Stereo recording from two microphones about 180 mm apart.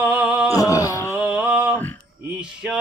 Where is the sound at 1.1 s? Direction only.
5° right (ahead or behind).